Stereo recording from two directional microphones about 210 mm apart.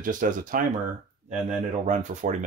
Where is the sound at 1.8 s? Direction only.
35° right (ahead or behind).